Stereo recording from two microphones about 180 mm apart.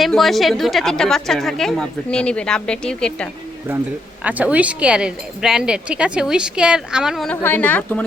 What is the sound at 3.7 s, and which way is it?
A woman's voice, 10° right (ahead or behind).